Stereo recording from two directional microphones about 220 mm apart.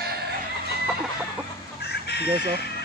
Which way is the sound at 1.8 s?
50° left (ahead or behind).